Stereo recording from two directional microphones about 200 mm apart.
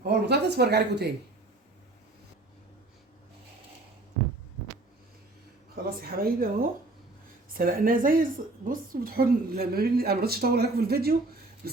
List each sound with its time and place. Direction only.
0.0 s speech: 55° right (ahead or behind)
5.7 s a woman's voice: 50° right (ahead or behind)
11.6 s a sound: 50° right (ahead or behind)